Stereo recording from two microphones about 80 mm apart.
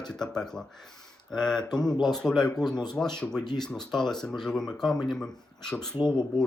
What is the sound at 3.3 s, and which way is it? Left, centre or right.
Speech, left.